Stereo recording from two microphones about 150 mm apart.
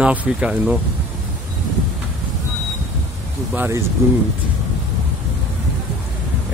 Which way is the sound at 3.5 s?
15° right (ahead or behind).